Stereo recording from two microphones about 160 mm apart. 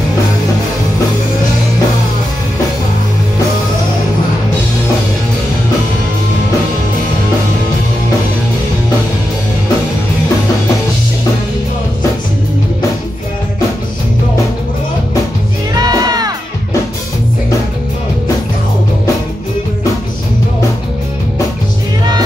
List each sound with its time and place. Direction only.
15.7 s music: 25° right (ahead or behind)